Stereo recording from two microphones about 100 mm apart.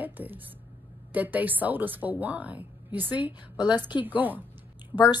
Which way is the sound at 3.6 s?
45° left (ahead or behind).